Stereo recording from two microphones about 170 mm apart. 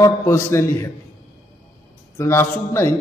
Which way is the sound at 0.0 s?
15° left (ahead or behind).